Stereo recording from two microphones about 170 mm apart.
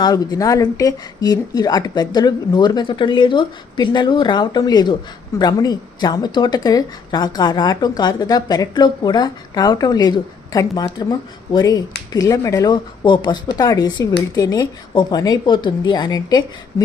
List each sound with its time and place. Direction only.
0.0 s a woman's voice: 20° left (ahead or behind)